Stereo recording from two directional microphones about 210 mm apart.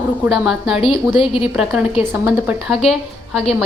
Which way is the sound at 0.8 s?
25° left (ahead or behind).